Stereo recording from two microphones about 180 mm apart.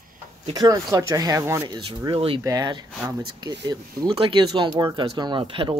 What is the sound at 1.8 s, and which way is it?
Speech, 30° right (ahead or behind).